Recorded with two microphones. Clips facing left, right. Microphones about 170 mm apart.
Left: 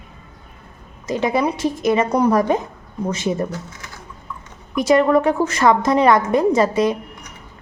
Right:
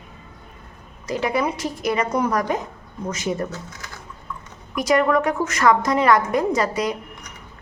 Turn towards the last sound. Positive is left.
turn(degrees=25)  # may be behind; listen again after turning